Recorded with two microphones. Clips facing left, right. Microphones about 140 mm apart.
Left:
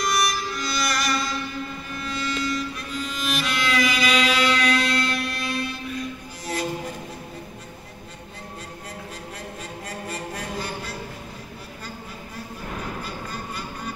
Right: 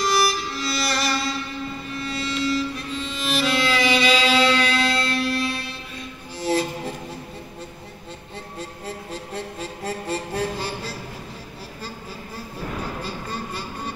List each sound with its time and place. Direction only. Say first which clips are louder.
0.0 s music: right 3 dB; 30° right (ahead or behind)
8.5 s music: right 5 dB; 30° right (ahead or behind)
13.0 s vehicle: right 3 dB; 30° right (ahead or behind)